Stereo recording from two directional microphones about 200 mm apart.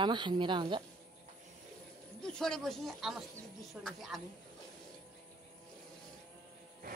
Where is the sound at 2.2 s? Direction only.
5° left (ahead or behind).